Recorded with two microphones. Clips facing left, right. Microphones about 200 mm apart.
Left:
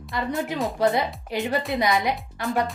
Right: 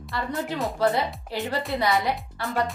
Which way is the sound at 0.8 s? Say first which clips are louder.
Left 1 dB; 15° left (ahead or behind).